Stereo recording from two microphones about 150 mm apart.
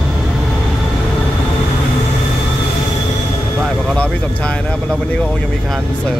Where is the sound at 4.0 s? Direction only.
10° left (ahead or behind).